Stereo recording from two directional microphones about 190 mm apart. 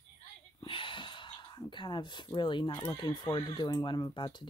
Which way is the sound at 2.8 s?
20° left (ahead or behind).